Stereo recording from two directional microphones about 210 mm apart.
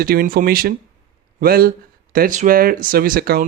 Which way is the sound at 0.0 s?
45° right (ahead or behind).